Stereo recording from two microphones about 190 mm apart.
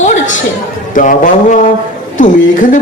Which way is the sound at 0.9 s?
45° left (ahead or behind).